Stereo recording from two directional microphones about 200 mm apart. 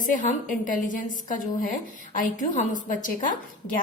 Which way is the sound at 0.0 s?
40° left (ahead or behind).